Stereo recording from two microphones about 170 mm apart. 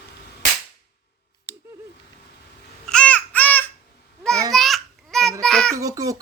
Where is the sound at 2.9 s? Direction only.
5° left (ahead or behind).